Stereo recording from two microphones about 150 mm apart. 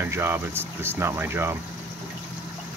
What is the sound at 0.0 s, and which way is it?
Speech, 15° right (ahead or behind).